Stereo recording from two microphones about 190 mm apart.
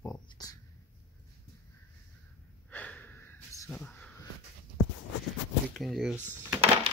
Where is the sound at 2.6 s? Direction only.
10° left (ahead or behind).